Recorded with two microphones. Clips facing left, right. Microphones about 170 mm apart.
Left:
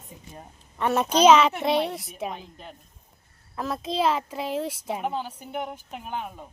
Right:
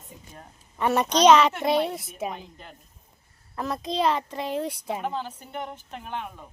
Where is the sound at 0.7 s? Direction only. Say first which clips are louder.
Even; centre (ahead or behind).